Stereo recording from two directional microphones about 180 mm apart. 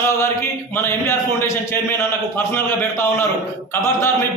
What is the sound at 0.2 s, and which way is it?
A man's voice, 15° left (ahead or behind).